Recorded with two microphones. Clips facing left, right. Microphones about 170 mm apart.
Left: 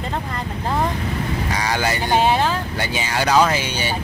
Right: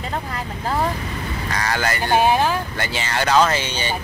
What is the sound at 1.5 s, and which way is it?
Vehicle, 15° left (ahead or behind).